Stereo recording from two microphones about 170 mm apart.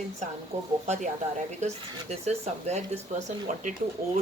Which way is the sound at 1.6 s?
40° right (ahead or behind).